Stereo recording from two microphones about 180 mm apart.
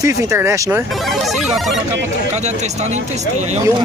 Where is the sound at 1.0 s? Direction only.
Centre (ahead or behind).